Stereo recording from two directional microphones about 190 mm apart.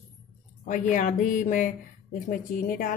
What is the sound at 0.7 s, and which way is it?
Speech, 40° left (ahead or behind).